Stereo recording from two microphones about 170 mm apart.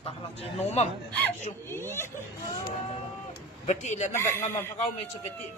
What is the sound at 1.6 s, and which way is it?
Speech, 15° left (ahead or behind).